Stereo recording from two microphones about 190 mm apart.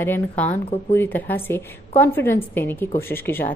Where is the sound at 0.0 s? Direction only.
10° left (ahead or behind).